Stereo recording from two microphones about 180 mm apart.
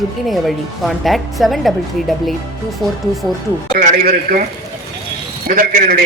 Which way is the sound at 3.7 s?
45° right (ahead or behind).